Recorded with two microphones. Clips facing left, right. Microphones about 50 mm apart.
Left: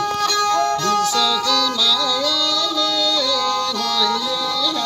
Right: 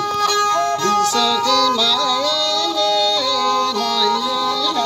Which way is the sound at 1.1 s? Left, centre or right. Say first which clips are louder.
Right 2 dB; right.